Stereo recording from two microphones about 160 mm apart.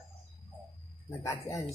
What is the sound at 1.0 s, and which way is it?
Speech, 20° left (ahead or behind).